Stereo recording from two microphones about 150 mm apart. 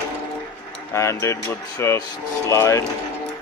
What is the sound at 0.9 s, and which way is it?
Speech, 20° left (ahead or behind).